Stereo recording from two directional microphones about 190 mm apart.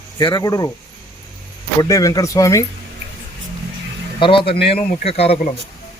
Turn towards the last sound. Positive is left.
turn(degrees=30)  # may be behind; listen again after turning